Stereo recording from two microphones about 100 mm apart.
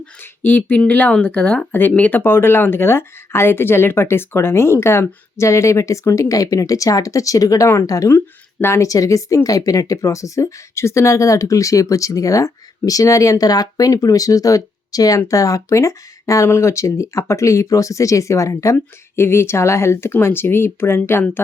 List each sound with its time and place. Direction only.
0.2 s speech: 20° left (ahead or behind)